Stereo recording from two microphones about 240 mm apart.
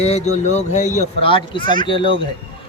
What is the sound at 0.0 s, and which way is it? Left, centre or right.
Speech, left.